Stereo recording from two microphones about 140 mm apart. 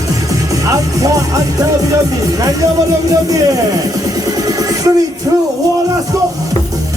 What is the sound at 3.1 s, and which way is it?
Speech, 25° right (ahead or behind).